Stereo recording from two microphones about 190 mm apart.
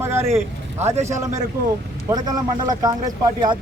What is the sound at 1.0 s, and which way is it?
A man's voice, 15° right (ahead or behind).